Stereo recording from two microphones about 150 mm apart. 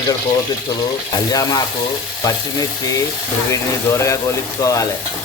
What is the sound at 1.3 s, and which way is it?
A man's voice, 25° left (ahead or behind).